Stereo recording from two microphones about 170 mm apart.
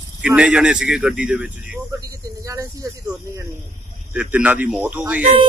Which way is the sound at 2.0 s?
20° right (ahead or behind).